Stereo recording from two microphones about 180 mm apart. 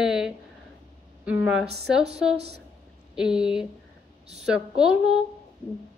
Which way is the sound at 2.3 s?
65° right (ahead or behind).